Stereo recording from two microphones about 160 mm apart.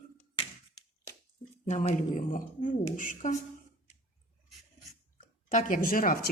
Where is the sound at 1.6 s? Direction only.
50° left (ahead or behind).